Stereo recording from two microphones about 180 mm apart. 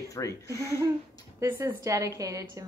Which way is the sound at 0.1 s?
15° left (ahead or behind).